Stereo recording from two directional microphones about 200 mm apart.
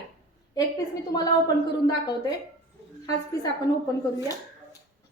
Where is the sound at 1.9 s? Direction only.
20° left (ahead or behind).